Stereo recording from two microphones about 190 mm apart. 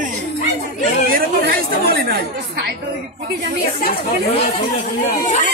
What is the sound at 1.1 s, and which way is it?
Speech, 55° right (ahead or behind).